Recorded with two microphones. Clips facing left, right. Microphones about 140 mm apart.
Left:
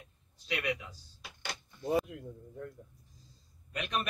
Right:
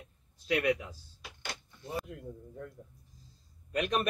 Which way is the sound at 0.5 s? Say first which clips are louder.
Right 6 dB; 40° right (ahead or behind).